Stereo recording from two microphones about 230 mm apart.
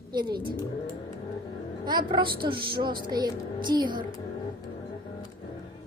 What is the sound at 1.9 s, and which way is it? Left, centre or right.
A woman's voice, centre.